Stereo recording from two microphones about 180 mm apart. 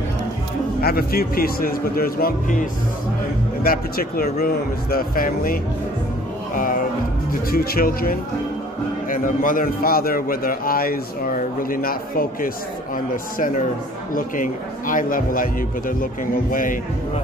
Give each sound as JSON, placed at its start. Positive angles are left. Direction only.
{"t": 0.7, "sound": "speech", "side_deg": 55}
{"t": 6.5, "sound": "music", "side_deg": 50}
{"t": 7.5, "sound": "a man's voice", "side_deg": 55}